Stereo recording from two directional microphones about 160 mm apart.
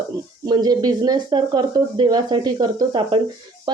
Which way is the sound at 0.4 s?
25° right (ahead or behind).